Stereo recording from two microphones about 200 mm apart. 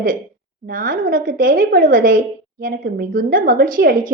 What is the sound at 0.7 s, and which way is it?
A woman's voice, 45° right (ahead or behind).